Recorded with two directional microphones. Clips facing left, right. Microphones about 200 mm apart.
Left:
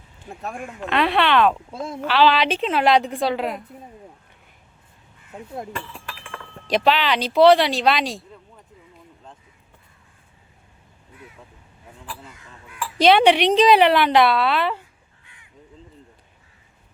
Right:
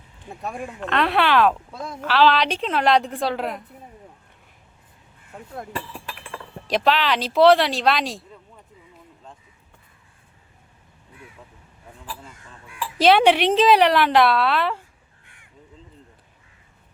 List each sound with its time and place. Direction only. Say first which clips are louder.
0.8 s a woman's voice: left 1 dB; 5° left (ahead or behind)
5.7 s chink: right 1 dB; 30° right (ahead or behind)
6.7 s a woman's voice: left 1 dB; centre (ahead or behind)
13.0 s a woman's voice: left 1 dB; 5° right (ahead or behind)